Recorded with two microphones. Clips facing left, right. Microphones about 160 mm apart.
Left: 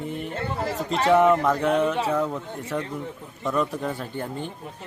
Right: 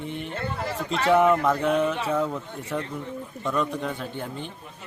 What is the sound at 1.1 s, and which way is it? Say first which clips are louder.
A man's voice: left 1 dB; centre (ahead or behind).